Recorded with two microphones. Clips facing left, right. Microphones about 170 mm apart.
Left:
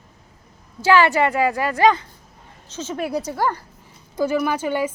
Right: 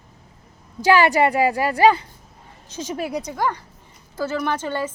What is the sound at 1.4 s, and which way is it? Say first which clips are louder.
Speech: right 1 dB; 35° right (ahead or behind).